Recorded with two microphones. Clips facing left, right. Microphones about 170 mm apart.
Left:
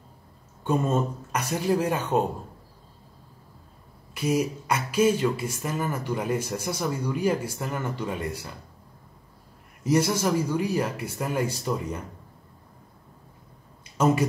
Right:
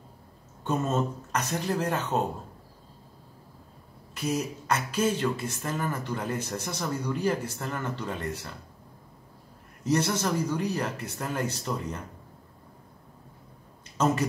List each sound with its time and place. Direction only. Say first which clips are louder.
0.7 s speech: left 3 dB; 10° left (ahead or behind)
4.1 s speech: left 5 dB; 10° left (ahead or behind)
9.8 s speech: left 3 dB; 10° left (ahead or behind)